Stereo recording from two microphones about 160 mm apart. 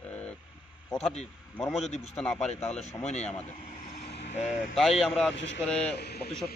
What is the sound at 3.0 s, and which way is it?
Speech, 45° left (ahead or behind).